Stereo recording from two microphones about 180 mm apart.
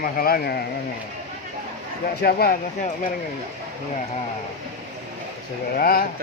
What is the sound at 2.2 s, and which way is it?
Speech, 60° left (ahead or behind).